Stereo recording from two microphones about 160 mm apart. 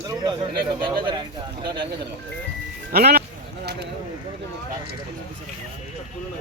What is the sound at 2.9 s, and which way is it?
Speech, 75° right (ahead or behind).